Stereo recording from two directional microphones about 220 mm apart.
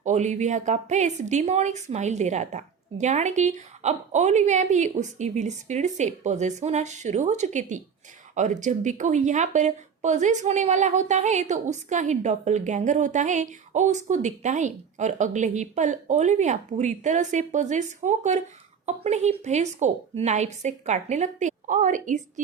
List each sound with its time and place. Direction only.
0.0 s speech: 35° right (ahead or behind)